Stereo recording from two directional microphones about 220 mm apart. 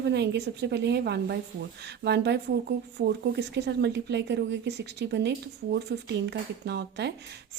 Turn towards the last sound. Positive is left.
turn(degrees=-50)  # may be behind; listen again after turning